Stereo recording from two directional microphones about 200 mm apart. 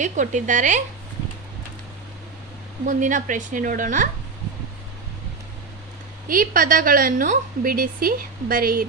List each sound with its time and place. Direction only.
0.0 s a woman's voice: 35° right (ahead or behind)
2.9 s a woman's voice: 40° right (ahead or behind)
6.2 s a woman's voice: 45° right (ahead or behind)